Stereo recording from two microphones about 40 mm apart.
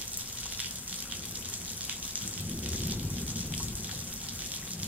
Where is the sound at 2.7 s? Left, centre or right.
Right.